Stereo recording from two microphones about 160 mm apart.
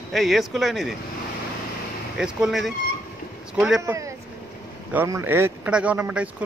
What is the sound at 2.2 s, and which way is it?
Speech, 5° right (ahead or behind).